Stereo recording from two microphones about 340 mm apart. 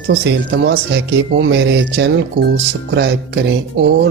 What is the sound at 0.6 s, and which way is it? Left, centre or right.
Speech, right.